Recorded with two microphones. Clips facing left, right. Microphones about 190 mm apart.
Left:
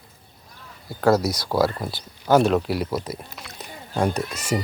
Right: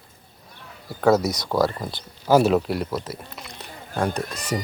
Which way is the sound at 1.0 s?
Centre (ahead or behind).